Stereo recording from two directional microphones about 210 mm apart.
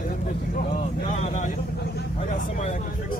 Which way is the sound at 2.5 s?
35° left (ahead or behind).